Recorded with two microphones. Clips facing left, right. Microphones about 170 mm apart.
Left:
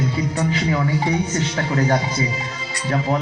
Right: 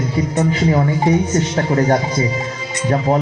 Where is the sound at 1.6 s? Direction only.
45° right (ahead or behind).